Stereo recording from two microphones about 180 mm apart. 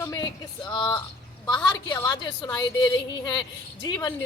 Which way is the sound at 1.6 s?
15° left (ahead or behind).